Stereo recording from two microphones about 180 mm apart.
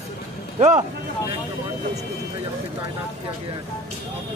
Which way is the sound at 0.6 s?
40° right (ahead or behind).